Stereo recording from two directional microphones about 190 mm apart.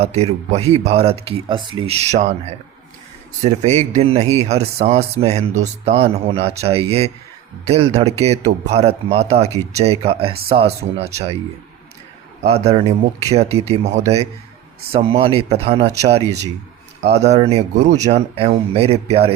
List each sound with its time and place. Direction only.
0.0 s speech: 35° right (ahead or behind)
12.4 s speech: 35° right (ahead or behind)